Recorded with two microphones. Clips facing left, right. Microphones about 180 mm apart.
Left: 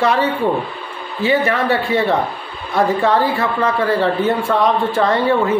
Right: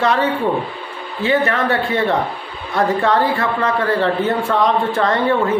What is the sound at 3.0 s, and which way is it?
Speech, 15° left (ahead or behind).